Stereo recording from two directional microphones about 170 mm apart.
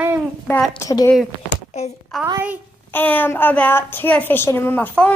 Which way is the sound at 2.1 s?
Centre (ahead or behind).